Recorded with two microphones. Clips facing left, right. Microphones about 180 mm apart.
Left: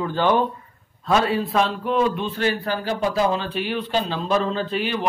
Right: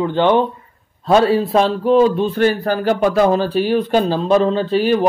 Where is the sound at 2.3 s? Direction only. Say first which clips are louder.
Right 7 dB; 50° right (ahead or behind).